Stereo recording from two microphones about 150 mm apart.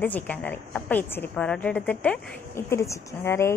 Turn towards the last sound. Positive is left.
turn(degrees=15)  # may be behind; listen again after turning